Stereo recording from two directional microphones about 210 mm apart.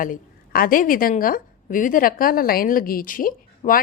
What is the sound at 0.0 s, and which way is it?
A woman's voice, 40° left (ahead or behind).